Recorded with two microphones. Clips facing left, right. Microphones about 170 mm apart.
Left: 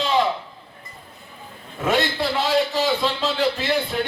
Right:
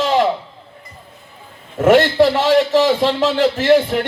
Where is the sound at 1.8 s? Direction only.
80° right.